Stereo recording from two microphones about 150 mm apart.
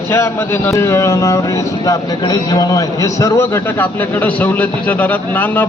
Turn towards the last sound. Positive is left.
turn(degrees=10)  # may be behind; listen again after turning